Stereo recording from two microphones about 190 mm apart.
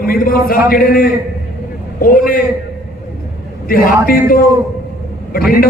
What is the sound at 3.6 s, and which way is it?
A man's voice, 50° left (ahead or behind).